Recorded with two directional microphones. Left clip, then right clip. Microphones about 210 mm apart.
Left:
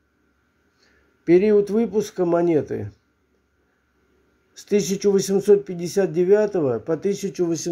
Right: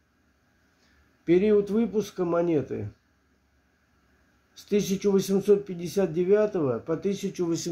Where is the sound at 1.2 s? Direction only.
25° left (ahead or behind).